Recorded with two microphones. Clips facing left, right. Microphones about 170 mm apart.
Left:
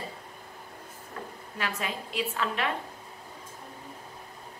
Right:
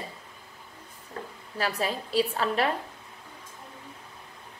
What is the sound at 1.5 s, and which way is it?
A woman's voice, 35° right (ahead or behind).